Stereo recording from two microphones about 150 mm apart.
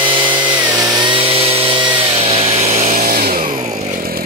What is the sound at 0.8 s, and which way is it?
Chainsaw, 25° right (ahead or behind).